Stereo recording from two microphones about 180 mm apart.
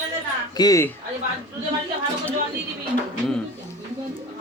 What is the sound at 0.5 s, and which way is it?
Speech, 20° left (ahead or behind).